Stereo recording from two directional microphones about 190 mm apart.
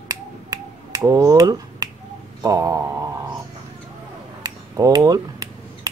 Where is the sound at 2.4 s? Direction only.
15° right (ahead or behind).